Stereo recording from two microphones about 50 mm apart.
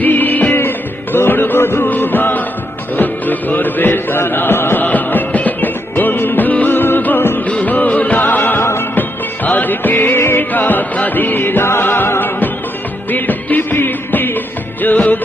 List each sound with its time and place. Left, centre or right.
0.0 s music: left
4.9 s music: left
7.4 s music: left
10.5 s music: left
13.1 s music: left